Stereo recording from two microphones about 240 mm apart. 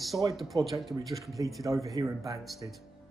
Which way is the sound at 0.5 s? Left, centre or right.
Centre.